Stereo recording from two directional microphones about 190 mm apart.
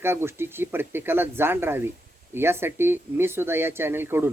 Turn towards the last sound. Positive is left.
turn(degrees=-10)  # may be behind; listen again after turning